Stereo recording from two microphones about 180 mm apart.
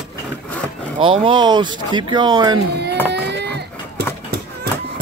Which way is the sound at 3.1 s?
70° right (ahead or behind).